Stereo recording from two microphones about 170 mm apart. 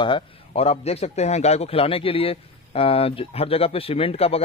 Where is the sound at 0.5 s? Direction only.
35° left (ahead or behind).